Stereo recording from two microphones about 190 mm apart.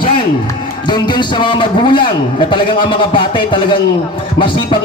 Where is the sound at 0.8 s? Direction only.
25° left (ahead or behind).